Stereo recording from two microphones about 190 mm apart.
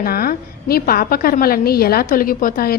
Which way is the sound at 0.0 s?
50° left (ahead or behind).